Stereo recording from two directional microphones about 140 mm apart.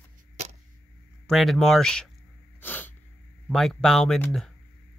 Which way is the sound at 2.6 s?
15° left (ahead or behind).